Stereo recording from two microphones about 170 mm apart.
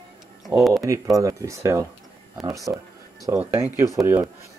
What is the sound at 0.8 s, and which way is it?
Speech, 20° right (ahead or behind).